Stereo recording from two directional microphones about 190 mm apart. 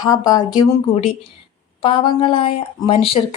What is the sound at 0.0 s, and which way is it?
Speech, 20° left (ahead or behind).